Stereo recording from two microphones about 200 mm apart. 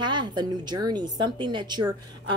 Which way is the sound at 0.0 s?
20° right (ahead or behind).